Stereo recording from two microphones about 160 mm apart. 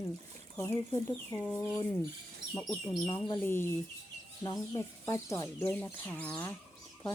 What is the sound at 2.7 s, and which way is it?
Speech, 15° left (ahead or behind).